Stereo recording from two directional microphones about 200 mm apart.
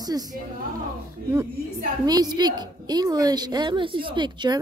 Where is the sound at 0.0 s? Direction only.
20° right (ahead or behind).